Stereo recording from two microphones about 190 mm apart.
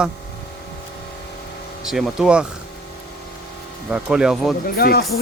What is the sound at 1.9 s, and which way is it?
Speech, centre (ahead or behind).